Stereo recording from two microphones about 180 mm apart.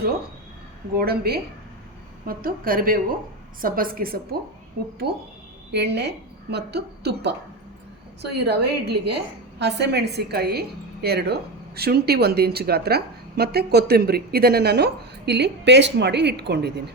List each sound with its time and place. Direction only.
0.9 s a woman's voice: 60° right (ahead or behind)
5.0 s a woman's voice: 65° right (ahead or behind)